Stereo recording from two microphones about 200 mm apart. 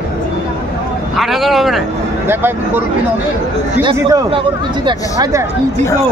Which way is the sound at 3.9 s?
15° right (ahead or behind).